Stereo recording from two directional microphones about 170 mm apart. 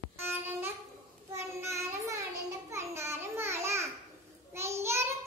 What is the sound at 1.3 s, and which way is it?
Child singing, 15° right (ahead or behind).